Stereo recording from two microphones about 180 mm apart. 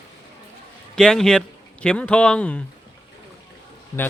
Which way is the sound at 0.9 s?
5° left (ahead or behind).